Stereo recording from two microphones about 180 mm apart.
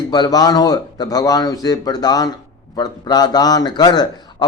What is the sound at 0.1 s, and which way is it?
A man's voice, 20° left (ahead or behind).